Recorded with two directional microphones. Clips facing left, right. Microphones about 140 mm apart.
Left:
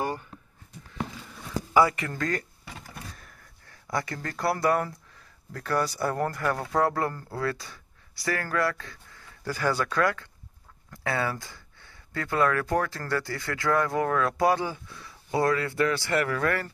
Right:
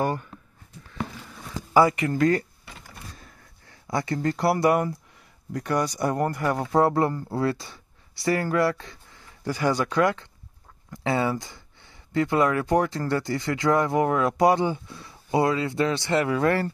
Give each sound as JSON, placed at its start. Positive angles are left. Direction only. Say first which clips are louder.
{"t": 1.7, "sound": "speech", "louder": "right 3 dB", "side_deg": -25}
{"t": 3.8, "sound": "speech", "louder": "right 6 dB", "side_deg": -25}